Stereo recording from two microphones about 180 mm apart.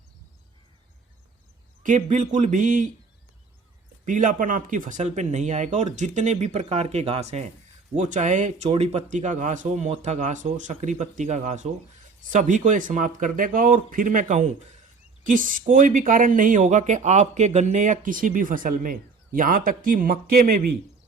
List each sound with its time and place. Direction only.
1.8 s speech: 45° right (ahead or behind)
4.0 s speech: 45° right (ahead or behind)